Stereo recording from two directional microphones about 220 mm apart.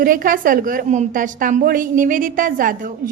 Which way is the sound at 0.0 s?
40° right (ahead or behind).